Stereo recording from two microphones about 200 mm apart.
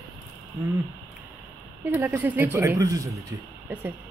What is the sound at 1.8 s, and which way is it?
Speech, 10° right (ahead or behind).